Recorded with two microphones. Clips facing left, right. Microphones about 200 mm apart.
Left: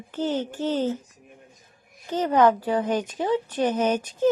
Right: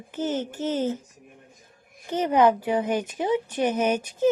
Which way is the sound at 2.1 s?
15° right (ahead or behind).